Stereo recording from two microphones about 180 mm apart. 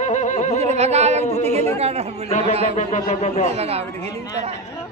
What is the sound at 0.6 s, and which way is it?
Music, 40° right (ahead or behind).